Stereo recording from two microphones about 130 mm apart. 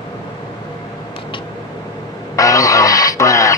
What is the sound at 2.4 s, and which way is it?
Radio, 25° left (ahead or behind).